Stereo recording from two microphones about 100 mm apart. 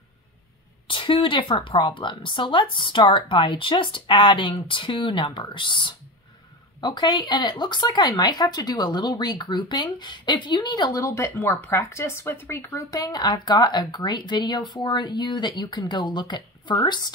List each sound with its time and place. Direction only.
0.8 s a woman's voice: 60° left (ahead or behind)